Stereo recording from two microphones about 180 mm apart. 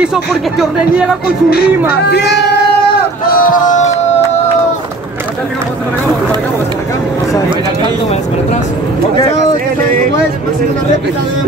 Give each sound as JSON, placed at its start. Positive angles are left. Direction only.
{"t": 0.0, "sound": "speech", "side_deg": -5}
{"t": 1.2, "sound": "speech", "side_deg": 60}
{"t": 3.3, "sound": "speech", "side_deg": 50}